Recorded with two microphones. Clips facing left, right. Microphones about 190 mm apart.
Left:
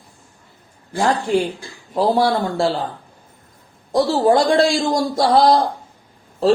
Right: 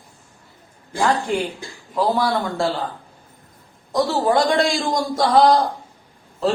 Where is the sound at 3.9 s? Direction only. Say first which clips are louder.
Left 4 dB; 30° left (ahead or behind).